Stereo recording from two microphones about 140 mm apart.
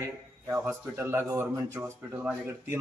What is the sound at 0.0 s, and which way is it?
A man's voice, 20° right (ahead or behind).